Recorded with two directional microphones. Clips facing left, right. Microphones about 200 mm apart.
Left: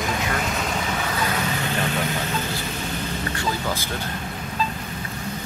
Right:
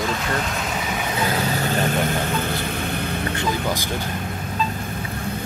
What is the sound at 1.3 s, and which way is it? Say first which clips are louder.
Vehicle: right 3 dB; 40° right (ahead or behind).